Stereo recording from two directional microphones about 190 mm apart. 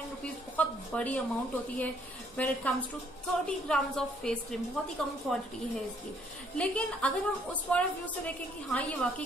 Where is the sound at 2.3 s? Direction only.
5° left (ahead or behind).